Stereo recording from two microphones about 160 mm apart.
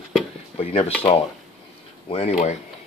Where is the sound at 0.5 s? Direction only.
40° left (ahead or behind).